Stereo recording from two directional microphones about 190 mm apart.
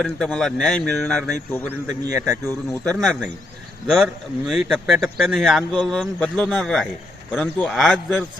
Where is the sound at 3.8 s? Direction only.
Centre (ahead or behind).